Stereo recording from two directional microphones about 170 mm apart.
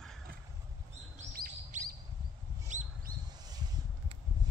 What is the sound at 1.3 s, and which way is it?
Chirp, 60° right (ahead or behind).